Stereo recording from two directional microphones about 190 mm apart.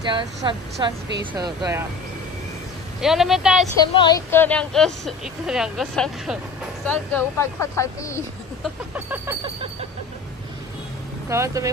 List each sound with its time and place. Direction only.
0.0 s speech: 25° right (ahead or behind)
3.0 s speech: centre (ahead or behind)
3.8 s a woman's voice: 25° left (ahead or behind)
4.3 s speech: 10° left (ahead or behind)
6.9 s speech: 10° left (ahead or behind)
8.9 s vehicle: 10° right (ahead or behind)
11.2 s vehicle: 15° right (ahead or behind)